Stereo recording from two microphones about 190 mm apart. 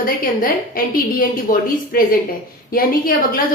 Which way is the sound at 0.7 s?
50° left (ahead or behind).